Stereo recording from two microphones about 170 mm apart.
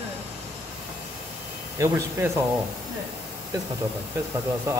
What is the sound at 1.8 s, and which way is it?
Speech, 15° right (ahead or behind).